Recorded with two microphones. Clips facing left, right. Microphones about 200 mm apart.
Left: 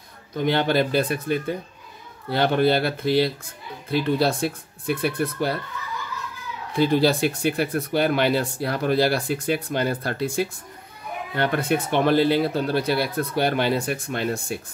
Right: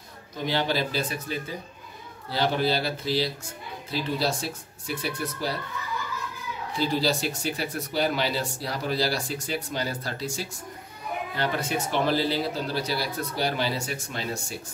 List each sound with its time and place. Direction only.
0.4 s speech: 55° left (ahead or behind)
6.7 s speech: 55° left (ahead or behind)